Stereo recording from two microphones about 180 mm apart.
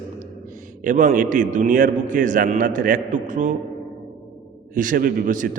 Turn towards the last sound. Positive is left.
turn(degrees=-45)  # may be behind; listen again after turning